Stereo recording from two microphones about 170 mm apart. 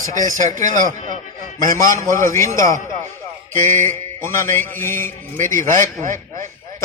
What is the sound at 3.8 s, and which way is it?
Mantra, 15° left (ahead or behind).